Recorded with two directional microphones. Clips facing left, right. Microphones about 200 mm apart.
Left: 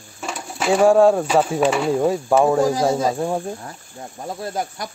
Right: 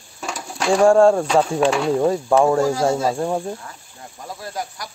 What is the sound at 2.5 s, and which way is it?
Speech, 15° left (ahead or behind).